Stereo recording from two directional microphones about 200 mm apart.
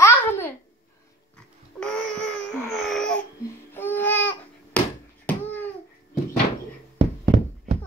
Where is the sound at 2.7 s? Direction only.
Centre (ahead or behind).